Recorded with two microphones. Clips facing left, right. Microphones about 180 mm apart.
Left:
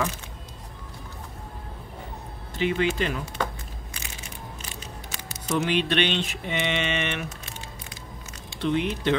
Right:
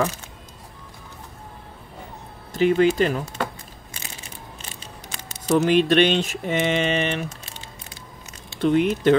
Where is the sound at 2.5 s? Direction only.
40° right (ahead or behind).